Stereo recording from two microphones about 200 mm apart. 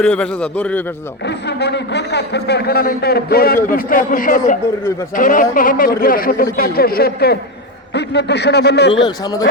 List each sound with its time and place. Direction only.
0.0 s a man's voice: 5° left (ahead or behind)
1.2 s a man's voice: 55° left (ahead or behind)
8.9 s speech: 25° left (ahead or behind)